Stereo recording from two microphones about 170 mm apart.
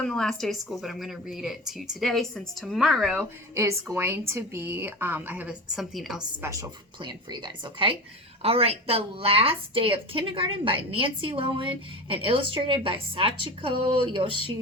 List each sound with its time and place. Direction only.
0.0 s a woman's voice: 5° left (ahead or behind)
3.5 s a woman's voice: 15° right (ahead or behind); by 6.2 s centre (ahead or behind)
6.4 s a woman's voice: 20° right (ahead or behind)